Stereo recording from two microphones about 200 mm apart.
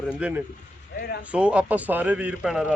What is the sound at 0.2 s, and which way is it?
Speech, 5° right (ahead or behind).